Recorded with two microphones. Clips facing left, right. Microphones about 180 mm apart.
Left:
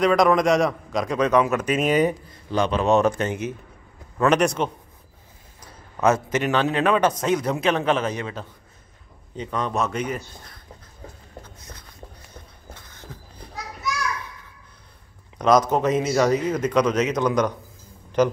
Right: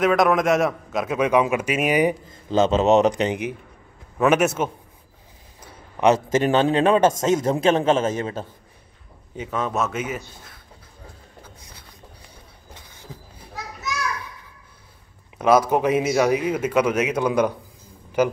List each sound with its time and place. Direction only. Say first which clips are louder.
0.0 s speech: even; 5° right (ahead or behind)
2.5 s a man's voice: right 3 dB; 25° right (ahead or behind); by 4.6 s 5° right (ahead or behind)
6.3 s a man's voice: right 4 dB; 30° right (ahead or behind)
8.1 s a man's voice: right 4 dB; 45° right (ahead or behind)
9.4 s a man's voice: even; 5° right (ahead or behind)
11.4 s a sound: left 1 dB; 10° right (ahead or behind)
12.7 s beatboxing: right 3 dB; 15° right (ahead or behind)
15.3 s speech: right 1 dB; 5° right (ahead or behind)